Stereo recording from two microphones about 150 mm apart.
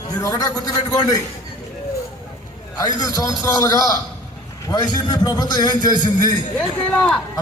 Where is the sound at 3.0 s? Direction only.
25° left (ahead or behind).